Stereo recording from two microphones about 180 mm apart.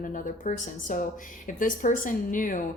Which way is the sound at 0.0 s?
50° left (ahead or behind).